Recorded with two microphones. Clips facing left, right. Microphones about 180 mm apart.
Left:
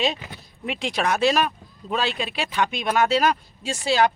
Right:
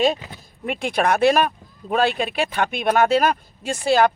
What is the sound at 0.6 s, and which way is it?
Speech, 55° right (ahead or behind).